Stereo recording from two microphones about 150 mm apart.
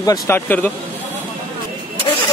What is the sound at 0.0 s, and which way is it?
Speech, 25° left (ahead or behind).